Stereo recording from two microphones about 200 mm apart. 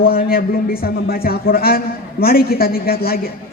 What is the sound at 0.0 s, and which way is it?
A man's voice, 50° left (ahead or behind).